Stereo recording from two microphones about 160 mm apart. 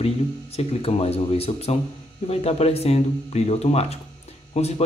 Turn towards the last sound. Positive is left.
turn(degrees=40)  # may be behind; listen again after turning